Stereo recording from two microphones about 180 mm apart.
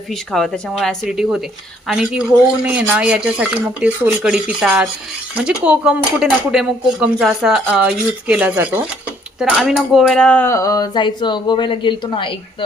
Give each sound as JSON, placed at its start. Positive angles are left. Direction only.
{"t": 0.1, "sound": "speech", "side_deg": 0}